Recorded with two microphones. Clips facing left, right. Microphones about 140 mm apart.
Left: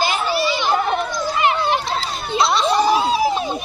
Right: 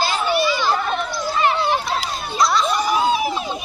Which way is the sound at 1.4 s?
20° left (ahead or behind).